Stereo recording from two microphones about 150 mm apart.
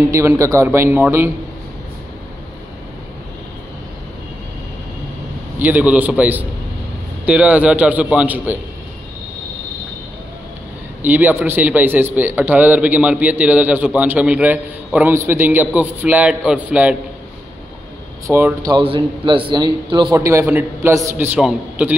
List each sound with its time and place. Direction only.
0.1 s a man's voice: 20° right (ahead or behind)
5.6 s a man's voice: 10° right (ahead or behind)
11.0 s a man's voice: 10° right (ahead or behind)
18.2 s a man's voice: 20° right (ahead or behind)
18.7 s a man's voice: 35° right (ahead or behind)
20.2 s a man's voice: 15° right (ahead or behind)
21.4 s a man's voice: 5° right (ahead or behind)